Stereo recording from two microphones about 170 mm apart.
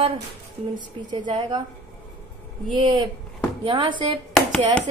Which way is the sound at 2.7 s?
30° right (ahead or behind).